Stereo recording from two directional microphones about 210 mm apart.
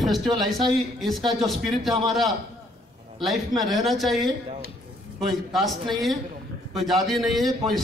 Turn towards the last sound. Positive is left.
turn(degrees=0)  # may be behind; listen again after turning